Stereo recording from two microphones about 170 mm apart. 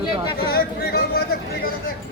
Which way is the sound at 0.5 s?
65° left (ahead or behind).